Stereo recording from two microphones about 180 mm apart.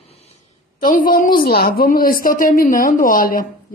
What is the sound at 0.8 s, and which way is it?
A woman's voice, 50° left (ahead or behind).